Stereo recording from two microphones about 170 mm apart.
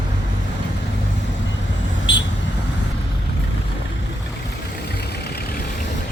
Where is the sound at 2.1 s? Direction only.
90° left.